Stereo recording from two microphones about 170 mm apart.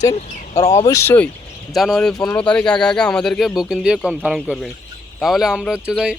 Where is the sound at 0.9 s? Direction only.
15° left (ahead or behind).